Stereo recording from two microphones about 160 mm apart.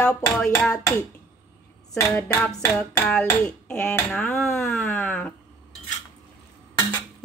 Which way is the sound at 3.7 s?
15° left (ahead or behind).